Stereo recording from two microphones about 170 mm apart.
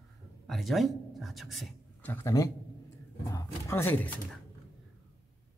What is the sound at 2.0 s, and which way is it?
A man's voice, 15° left (ahead or behind).